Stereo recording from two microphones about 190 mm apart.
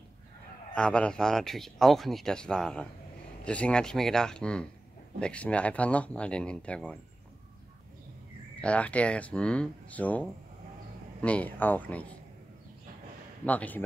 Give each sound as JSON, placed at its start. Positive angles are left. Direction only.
{"t": 0.7, "sound": "speech", "side_deg": 5}
{"t": 8.5, "sound": "speech", "side_deg": 5}
{"t": 13.5, "sound": "speech", "side_deg": 10}